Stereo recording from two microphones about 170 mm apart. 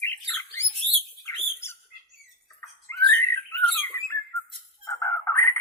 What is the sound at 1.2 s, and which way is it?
Bird, 15° left (ahead or behind).